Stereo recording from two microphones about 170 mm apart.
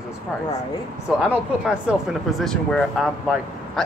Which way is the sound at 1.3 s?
5° right (ahead or behind).